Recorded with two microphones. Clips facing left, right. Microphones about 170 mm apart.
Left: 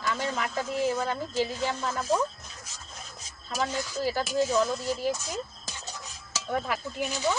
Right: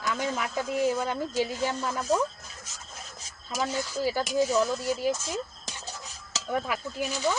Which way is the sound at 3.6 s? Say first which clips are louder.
Right 1 dB; 5° right (ahead or behind).